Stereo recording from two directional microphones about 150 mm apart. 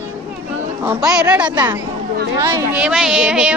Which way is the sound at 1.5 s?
20° right (ahead or behind).